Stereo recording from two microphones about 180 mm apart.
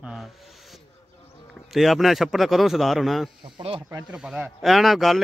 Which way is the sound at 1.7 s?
Centre (ahead or behind).